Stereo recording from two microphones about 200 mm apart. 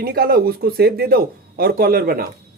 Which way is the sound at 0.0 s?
50° right (ahead or behind).